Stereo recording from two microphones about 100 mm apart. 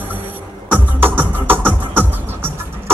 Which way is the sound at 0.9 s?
20° right (ahead or behind).